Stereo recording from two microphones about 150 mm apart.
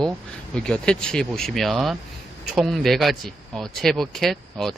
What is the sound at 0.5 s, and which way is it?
Speech, 5° left (ahead or behind).